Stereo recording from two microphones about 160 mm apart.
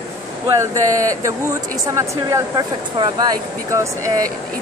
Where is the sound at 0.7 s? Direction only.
20° right (ahead or behind).